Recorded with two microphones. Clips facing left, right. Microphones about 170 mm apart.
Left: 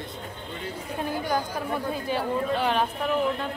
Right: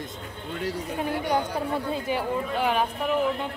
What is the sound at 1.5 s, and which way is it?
Speech, 20° right (ahead or behind).